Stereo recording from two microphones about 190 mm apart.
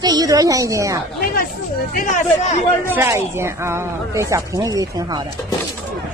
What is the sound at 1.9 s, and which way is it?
Speech, 45° left (ahead or behind).